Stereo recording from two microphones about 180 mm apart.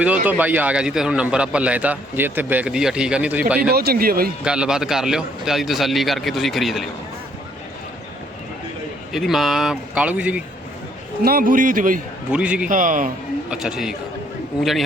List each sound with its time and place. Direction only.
0.0 s a man's voice: 10° right (ahead or behind)
3.6 s speech: 60° right (ahead or behind)
4.4 s a man's voice: 5° right (ahead or behind)
9.1 s a man's voice: centre (ahead or behind)
11.2 s a man's voice: 55° right (ahead or behind)
12.3 s a man's voice: 5° right (ahead or behind)
12.6 s a man's voice: 45° right (ahead or behind)
13.5 s a man's voice: 5° right (ahead or behind)